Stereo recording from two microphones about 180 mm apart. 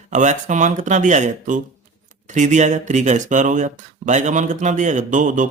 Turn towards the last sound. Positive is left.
turn(degrees=-45)  # may be behind; listen again after turning